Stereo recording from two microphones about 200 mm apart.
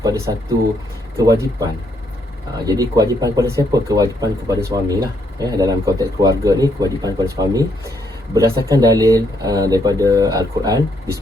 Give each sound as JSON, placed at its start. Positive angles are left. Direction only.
{"t": 0.0, "sound": "speech", "side_deg": -15}